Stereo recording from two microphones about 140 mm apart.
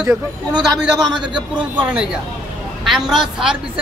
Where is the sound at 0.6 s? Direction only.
35° right (ahead or behind).